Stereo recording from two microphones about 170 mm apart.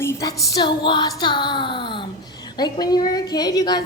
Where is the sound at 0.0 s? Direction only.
20° left (ahead or behind).